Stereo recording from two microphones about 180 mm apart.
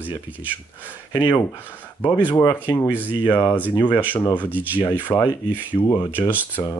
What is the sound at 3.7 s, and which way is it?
Speech, 25° left (ahead or behind).